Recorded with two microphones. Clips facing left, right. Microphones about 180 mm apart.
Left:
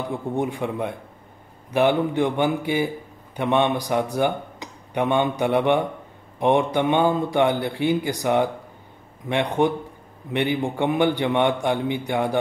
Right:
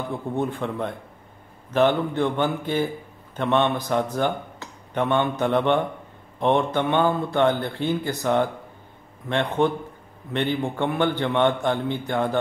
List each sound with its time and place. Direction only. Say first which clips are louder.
0.1 s speech: left 1 dB; 15° left (ahead or behind)